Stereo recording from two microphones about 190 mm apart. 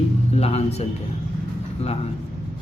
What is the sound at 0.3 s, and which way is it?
Speech, 35° left (ahead or behind).